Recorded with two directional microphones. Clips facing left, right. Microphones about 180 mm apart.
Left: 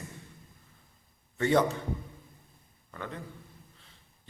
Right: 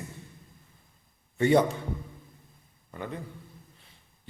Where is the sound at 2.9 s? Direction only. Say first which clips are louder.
Right 3 dB; 15° right (ahead or behind).